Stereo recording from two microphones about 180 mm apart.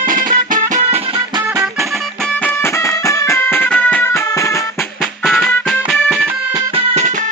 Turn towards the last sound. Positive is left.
turn(degrees=-40)  # may be behind; listen again after turning